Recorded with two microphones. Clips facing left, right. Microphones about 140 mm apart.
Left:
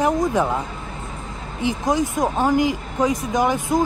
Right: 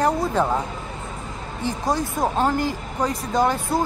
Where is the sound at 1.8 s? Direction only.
15° left (ahead or behind).